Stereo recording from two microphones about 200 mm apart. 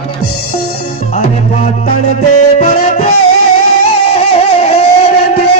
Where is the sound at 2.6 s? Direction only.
35° left (ahead or behind).